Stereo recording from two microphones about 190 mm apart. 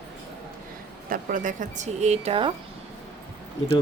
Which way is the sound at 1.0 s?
45° right (ahead or behind).